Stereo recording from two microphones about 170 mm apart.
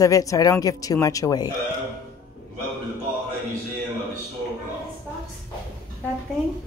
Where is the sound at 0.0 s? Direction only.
20° left (ahead or behind).